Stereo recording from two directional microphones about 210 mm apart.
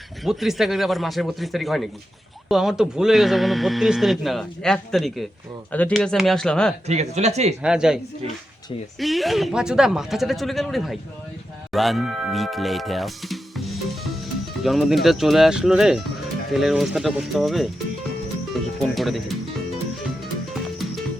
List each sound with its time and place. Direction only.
0.3 s speech: centre (ahead or behind)
6.8 s speech: 30° right (ahead or behind)
7.6 s speech: 5° right (ahead or behind)
9.0 s speech: centre (ahead or behind)
14.6 s speech: centre (ahead or behind)
18.8 s speech: centre (ahead or behind)